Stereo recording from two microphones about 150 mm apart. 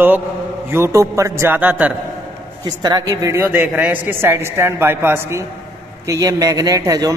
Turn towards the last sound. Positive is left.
turn(degrees=-25)  # may be behind; listen again after turning